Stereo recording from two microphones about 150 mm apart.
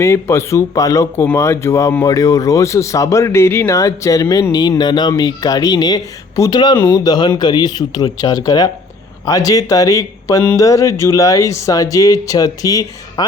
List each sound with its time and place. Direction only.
0.0 s speech: 20° left (ahead or behind)